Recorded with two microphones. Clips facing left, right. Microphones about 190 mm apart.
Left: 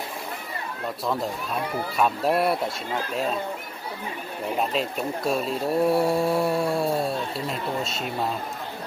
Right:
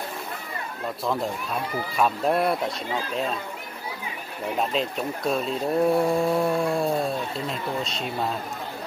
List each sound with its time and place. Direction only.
2.0 s speech: 5° left (ahead or behind)
4.6 s speech: 5° left (ahead or behind)